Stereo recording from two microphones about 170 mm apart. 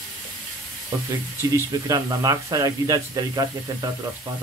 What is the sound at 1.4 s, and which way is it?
Speech, 20° right (ahead or behind).